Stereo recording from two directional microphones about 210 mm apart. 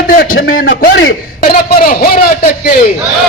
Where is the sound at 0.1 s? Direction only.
45° left (ahead or behind).